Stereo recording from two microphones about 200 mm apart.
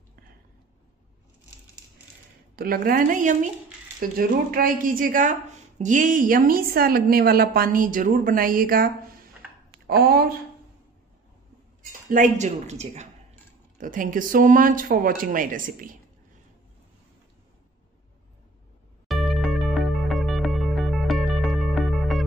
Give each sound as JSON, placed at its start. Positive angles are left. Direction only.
{"t": 2.5, "sound": "a woman's voice", "side_deg": -45}
{"t": 12.1, "sound": "a woman's voice", "side_deg": -40}
{"t": 19.0, "sound": "music", "side_deg": 0}